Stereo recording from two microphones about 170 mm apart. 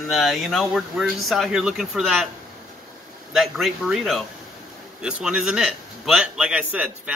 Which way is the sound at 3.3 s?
Centre (ahead or behind).